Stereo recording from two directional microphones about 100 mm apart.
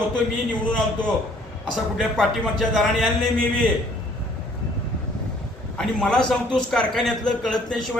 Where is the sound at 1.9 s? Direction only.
Centre (ahead or behind).